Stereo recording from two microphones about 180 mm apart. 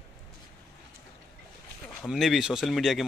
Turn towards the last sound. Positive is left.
turn(degrees=0)  # may be behind; listen again after turning